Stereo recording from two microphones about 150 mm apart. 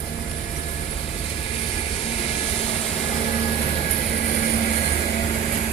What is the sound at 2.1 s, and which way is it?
Vehicle, 40° left (ahead or behind).